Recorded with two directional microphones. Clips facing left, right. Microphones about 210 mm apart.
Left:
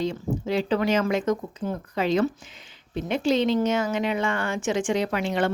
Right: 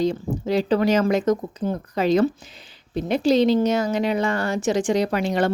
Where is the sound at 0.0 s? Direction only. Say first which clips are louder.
Right 4 dB; 40° right (ahead or behind).